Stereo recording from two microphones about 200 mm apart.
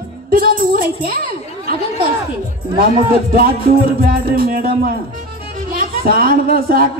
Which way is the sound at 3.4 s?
45° right (ahead or behind).